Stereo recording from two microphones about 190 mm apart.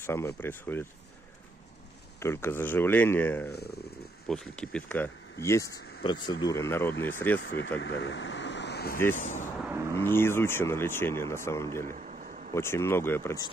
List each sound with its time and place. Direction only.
0.0 s speech: 15° left (ahead or behind)
2.1 s speech: 15° left (ahead or behind)
7.3 s speech: 70° left (ahead or behind); by 9.0 s 55° left (ahead or behind)
9.1 s speech: 40° left (ahead or behind)
9.7 s a sound: 15° right (ahead or behind)
9.9 s speech: 10° left (ahead or behind)
11.8 s a sound: 45° right (ahead or behind)
12.5 s speech: 15° left (ahead or behind)